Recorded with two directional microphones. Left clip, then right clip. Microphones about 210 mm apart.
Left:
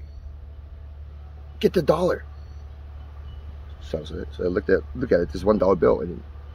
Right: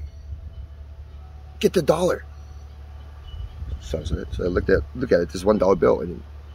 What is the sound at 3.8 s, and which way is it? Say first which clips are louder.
Speech: right 1 dB; 5° right (ahead or behind).